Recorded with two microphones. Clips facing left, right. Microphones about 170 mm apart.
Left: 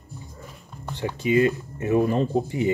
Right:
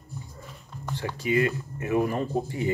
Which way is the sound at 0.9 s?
20° left (ahead or behind).